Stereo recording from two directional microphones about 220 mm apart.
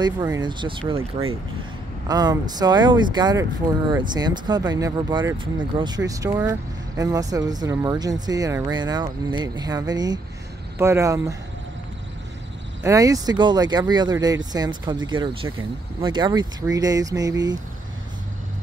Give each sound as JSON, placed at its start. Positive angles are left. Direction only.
{"t": 0.0, "sound": "speech", "side_deg": -20}
{"t": 2.0, "sound": "speech", "side_deg": -15}
{"t": 12.8, "sound": "speech", "side_deg": -15}